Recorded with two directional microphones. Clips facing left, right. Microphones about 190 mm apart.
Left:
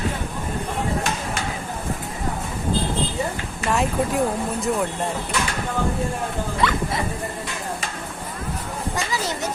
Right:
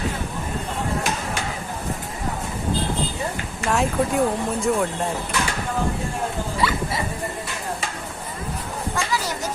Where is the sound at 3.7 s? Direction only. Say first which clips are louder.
Right 1 dB; centre (ahead or behind).